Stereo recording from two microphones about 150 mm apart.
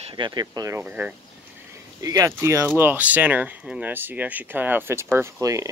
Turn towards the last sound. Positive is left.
turn(degrees=-20)  # may be behind; listen again after turning